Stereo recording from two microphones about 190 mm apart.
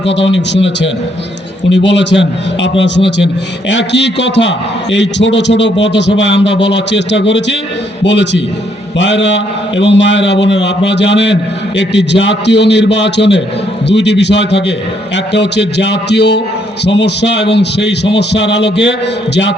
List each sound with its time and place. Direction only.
0.0 s a man's voice: 70° left (ahead or behind)